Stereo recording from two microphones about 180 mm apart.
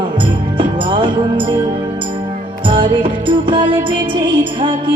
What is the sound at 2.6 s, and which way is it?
Music, 30° right (ahead or behind).